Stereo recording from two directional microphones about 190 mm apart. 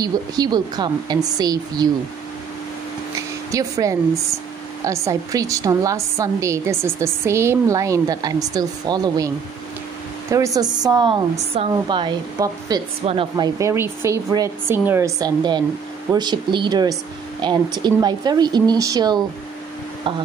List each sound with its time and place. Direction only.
0.0 s a woman's voice: 20° right (ahead or behind)
3.5 s a woman's voice: 15° right (ahead or behind)
10.3 s a woman's voice: 15° right (ahead or behind)
13.6 s a woman's voice: 15° right (ahead or behind)